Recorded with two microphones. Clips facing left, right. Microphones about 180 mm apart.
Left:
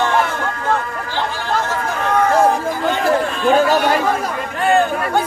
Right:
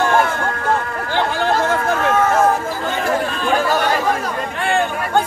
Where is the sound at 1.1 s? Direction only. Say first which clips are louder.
Right 4 dB; 55° right (ahead or behind).